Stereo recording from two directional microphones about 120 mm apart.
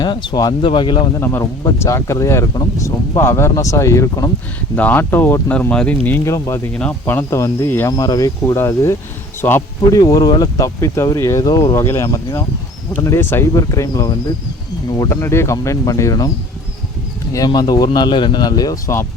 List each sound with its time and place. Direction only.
0.0 s speech: 40° left (ahead or behind)
1.2 s speech: 20° left (ahead or behind)
4.7 s speech: 15° left (ahead or behind)
7.9 s speech: 30° left (ahead or behind)
10.0 s speech: 30° left (ahead or behind)
17.3 s speech: 30° left (ahead or behind)